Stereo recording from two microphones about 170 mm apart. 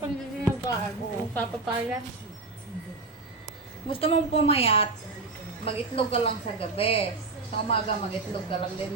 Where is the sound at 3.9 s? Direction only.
35° left (ahead or behind).